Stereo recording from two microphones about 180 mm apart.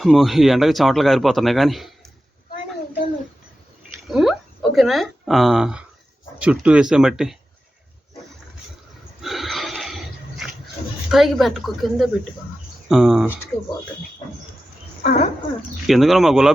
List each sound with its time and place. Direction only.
0.0 s a man's voice: centre (ahead or behind)
4.1 s a man's voice: centre (ahead or behind)
9.2 s a sound: centre (ahead or behind)
11.1 s a man's voice: centre (ahead or behind)
15.0 s speech: 50° left (ahead or behind)
15.9 s a man's voice: centre (ahead or behind)